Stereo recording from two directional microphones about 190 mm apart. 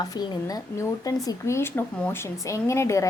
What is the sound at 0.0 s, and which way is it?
Speech, 20° left (ahead or behind).